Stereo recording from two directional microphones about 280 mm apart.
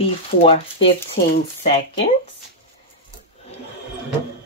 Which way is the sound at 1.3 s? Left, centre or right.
Left.